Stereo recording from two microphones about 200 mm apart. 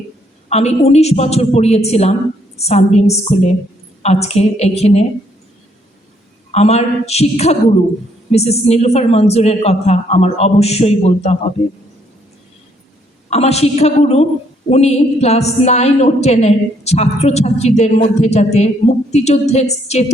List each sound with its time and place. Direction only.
0.5 s a woman's voice: 30° left (ahead or behind)
6.5 s a woman's voice: 30° left (ahead or behind)
13.3 s a woman's voice: 30° left (ahead or behind)